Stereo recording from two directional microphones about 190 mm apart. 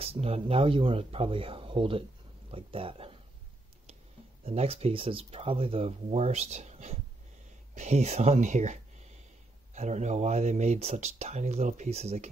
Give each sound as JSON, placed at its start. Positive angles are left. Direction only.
{"t": 0.0, "sound": "speech", "side_deg": -30}
{"t": 4.5, "sound": "speech", "side_deg": -30}
{"t": 9.8, "sound": "speech", "side_deg": -40}